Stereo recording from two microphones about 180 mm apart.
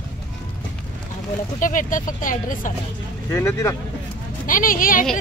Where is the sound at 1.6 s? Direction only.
45° left (ahead or behind).